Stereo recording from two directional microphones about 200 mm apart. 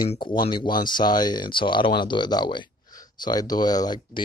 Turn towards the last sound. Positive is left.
turn(degrees=20)  # may be behind; listen again after turning